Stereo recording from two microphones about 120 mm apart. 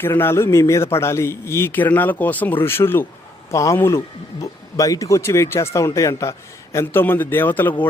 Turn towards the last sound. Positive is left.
turn(degrees=15)  # may be behind; listen again after turning